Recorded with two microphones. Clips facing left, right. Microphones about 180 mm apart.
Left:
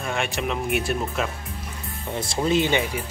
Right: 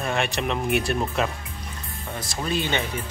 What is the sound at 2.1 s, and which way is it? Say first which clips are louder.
Speech: left 6 dB; 25° left (ahead or behind).